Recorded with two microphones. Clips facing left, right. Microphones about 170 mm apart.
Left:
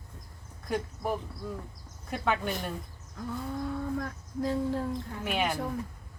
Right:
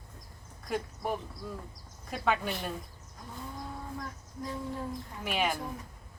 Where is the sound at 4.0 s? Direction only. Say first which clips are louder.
Left 8 dB; 75° left (ahead or behind).